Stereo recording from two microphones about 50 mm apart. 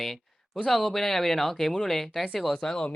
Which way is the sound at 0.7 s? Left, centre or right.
Centre.